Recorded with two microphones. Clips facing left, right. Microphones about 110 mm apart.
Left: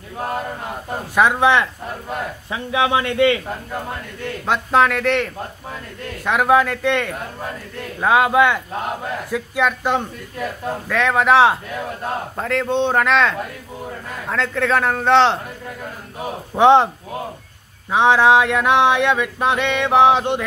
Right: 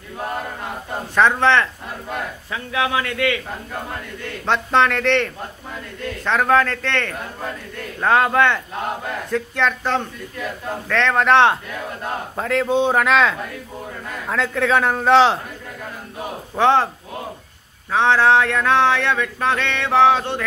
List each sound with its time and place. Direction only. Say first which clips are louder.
1.1 s male singing: left 1 dB; 10° left (ahead or behind)
2.5 s a man's voice: left 3 dB; 20° left (ahead or behind)
4.5 s a man's voice: left 1 dB; 5° left (ahead or behind)
6.2 s male singing: left 2 dB; 10° left (ahead or behind)
10.9 s a man's voice: even; 10° left (ahead or behind)
16.5 s male singing: left 4 dB; 20° left (ahead or behind)
17.9 s male singing: left 2 dB; 15° left (ahead or behind)